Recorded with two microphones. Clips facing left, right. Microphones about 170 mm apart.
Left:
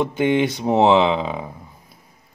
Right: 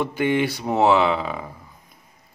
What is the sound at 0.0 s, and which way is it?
Speech, 20° left (ahead or behind).